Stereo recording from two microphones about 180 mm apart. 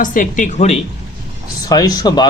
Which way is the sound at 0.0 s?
45° left (ahead or behind).